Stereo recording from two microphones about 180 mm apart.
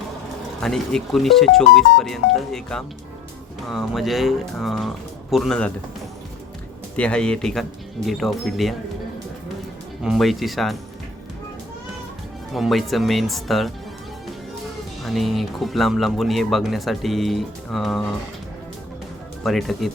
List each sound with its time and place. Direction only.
0.6 s speech: 5° left (ahead or behind)
6.9 s speech: 5° left (ahead or behind)
10.0 s speech: centre (ahead or behind)
12.5 s speech: centre (ahead or behind)
15.0 s speech: centre (ahead or behind)
19.4 s speech: centre (ahead or behind)